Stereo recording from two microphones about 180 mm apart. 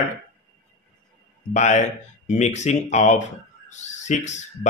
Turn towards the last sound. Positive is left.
turn(degrees=40)  # may be behind; listen again after turning